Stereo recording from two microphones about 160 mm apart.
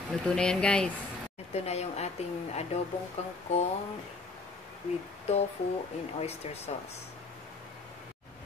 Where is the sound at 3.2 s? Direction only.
45° left (ahead or behind).